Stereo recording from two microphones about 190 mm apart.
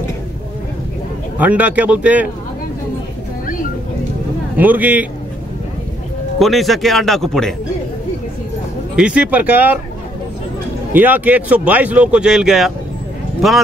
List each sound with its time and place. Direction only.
1.4 s speech: 10° right (ahead or behind)
4.6 s speech: 10° right (ahead or behind)
6.4 s speech: centre (ahead or behind)
8.9 s speech: 5° right (ahead or behind)
10.9 s speech: 10° right (ahead or behind)